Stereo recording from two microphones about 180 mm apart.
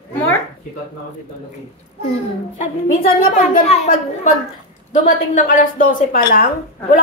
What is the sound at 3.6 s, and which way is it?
A woman's voice, 35° left (ahead or behind).